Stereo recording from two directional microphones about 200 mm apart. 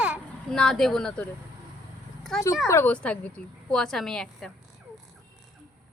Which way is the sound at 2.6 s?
10° left (ahead or behind).